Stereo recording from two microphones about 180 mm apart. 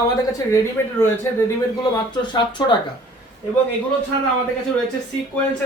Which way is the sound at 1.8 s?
25° left (ahead or behind).